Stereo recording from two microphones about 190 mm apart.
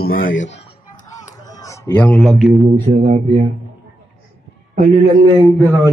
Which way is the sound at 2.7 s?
35° right (ahead or behind).